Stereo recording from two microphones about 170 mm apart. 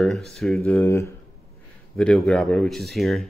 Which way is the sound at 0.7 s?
15° left (ahead or behind).